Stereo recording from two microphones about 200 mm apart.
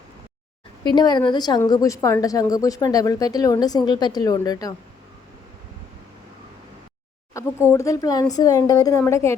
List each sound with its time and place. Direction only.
0.9 s a woman's voice: 20° left (ahead or behind)
7.3 s a sound: 15° left (ahead or behind)
7.7 s a woman's voice: 15° left (ahead or behind)